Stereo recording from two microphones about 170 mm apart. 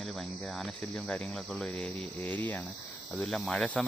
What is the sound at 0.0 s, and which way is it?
Speech, centre (ahead or behind).